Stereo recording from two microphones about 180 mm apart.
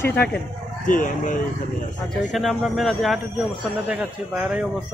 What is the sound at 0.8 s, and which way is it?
Speech, 45° left (ahead or behind).